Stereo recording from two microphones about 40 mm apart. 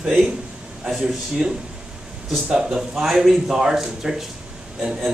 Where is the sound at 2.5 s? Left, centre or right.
Centre.